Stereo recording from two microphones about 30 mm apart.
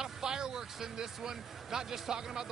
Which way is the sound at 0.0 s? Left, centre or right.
Right.